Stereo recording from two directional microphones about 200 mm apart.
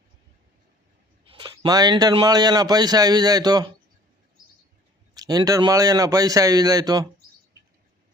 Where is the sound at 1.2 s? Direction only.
25° right (ahead or behind).